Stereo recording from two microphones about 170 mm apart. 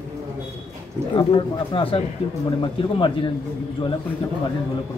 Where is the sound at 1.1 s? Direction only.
30° left (ahead or behind).